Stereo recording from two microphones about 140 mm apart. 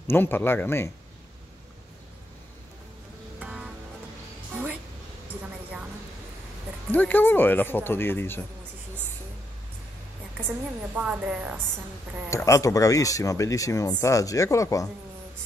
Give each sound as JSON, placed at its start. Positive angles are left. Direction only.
{"t": 0.0, "sound": "speech", "side_deg": 15}
{"t": 3.3, "sound": "music", "side_deg": -10}
{"t": 5.3, "sound": "a sound", "side_deg": -10}
{"t": 6.9, "sound": "speech", "side_deg": 15}
{"t": 11.0, "sound": "speech", "side_deg": -10}
{"t": 12.3, "sound": "speech", "side_deg": 20}